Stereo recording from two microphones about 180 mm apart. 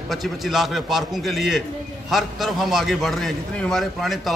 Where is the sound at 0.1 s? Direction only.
Centre (ahead or behind).